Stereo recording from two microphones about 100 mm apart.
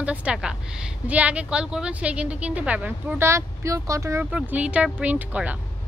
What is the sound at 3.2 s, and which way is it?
Speech, 30° right (ahead or behind).